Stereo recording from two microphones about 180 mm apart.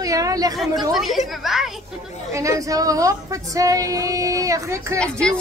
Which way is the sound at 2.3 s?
20° right (ahead or behind).